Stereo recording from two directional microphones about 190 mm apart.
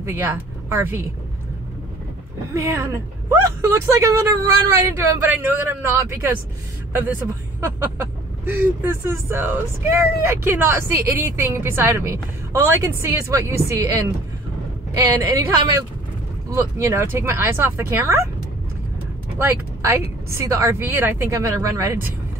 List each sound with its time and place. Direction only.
0.0 s speech: 10° right (ahead or behind)
2.5 s speech: 15° right (ahead or behind)
8.5 s speech: 10° right (ahead or behind)
19.3 s speech: 15° right (ahead or behind)